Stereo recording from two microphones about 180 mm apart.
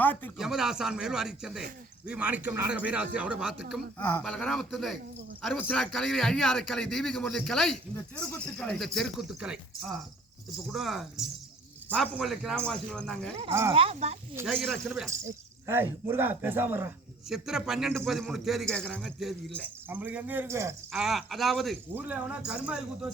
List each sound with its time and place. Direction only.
0.0 s speech: 10° left (ahead or behind)
0.3 s a man's voice: centre (ahead or behind)
3.9 s a man's voice: 10° left (ahead or behind)
12.1 s a man's voice: centre (ahead or behind)
13.5 s a man's voice: 15° right (ahead or behind)
13.7 s speech: 35° right (ahead or behind)
14.4 s a man's voice: centre (ahead or behind)
15.6 s a man's voice: 10° right (ahead or behind)
19.9 s a man's voice: 10° right (ahead or behind)
20.9 s a man's voice: centre (ahead or behind)